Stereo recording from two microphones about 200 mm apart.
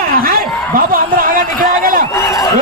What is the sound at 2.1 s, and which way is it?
Speech, 15° left (ahead or behind).